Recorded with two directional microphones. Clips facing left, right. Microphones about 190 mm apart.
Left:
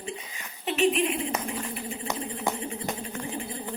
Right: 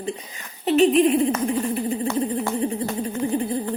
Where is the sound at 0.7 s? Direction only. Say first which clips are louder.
Right 8 dB; 35° right (ahead or behind).